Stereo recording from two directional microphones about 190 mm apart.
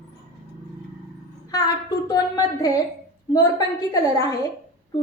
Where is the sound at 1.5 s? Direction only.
20° left (ahead or behind).